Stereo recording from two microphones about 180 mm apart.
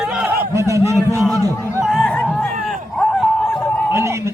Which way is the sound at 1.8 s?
Centre (ahead or behind).